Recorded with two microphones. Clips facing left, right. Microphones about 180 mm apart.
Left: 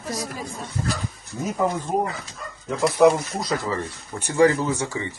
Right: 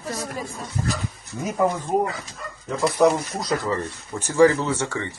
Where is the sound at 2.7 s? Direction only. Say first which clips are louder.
Left 2 dB; centre (ahead or behind).